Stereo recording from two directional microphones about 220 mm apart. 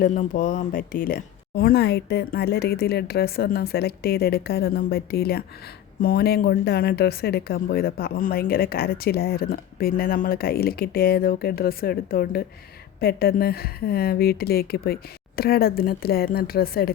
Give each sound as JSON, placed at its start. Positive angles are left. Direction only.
{"t": 0.0, "sound": "speech", "side_deg": 35}